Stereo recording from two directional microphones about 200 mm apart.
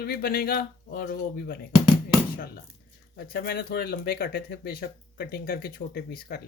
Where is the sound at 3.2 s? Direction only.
50° left (ahead or behind).